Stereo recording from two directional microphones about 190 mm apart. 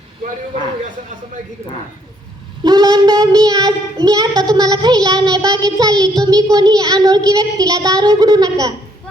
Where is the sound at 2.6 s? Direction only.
20° right (ahead or behind).